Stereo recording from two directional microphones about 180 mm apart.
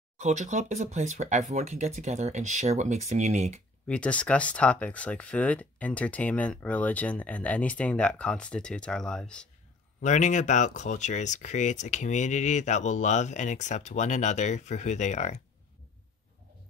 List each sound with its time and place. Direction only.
0.2 s speech: 40° right (ahead or behind)
3.8 s speech: 5° left (ahead or behind)
10.0 s speech: 40° left (ahead or behind)